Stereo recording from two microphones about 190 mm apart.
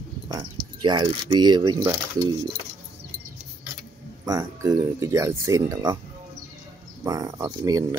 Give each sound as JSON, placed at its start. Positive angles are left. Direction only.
{"t": 0.8, "sound": "speech", "side_deg": -20}
{"t": 4.3, "sound": "speech", "side_deg": -15}
{"t": 7.1, "sound": "speech", "side_deg": -20}